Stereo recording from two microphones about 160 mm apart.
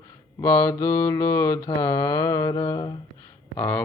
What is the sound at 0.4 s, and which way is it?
Speech, 20° left (ahead or behind).